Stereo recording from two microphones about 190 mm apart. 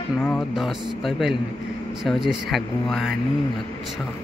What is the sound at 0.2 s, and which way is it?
Speech, 5° left (ahead or behind).